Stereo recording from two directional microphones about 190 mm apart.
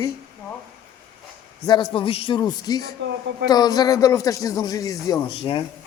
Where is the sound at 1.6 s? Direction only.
25° left (ahead or behind).